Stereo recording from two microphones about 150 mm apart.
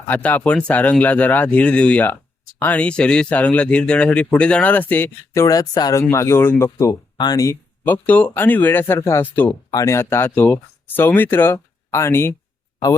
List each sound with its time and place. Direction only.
0.1 s speech: 10° left (ahead or behind)